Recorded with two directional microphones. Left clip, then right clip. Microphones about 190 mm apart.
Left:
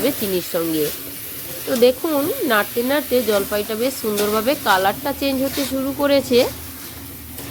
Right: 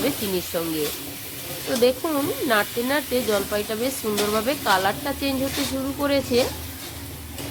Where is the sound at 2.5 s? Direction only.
20° left (ahead or behind).